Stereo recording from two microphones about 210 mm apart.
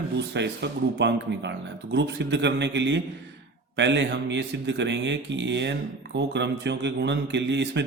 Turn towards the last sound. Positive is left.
turn(degrees=-55)  # may be behind; listen again after turning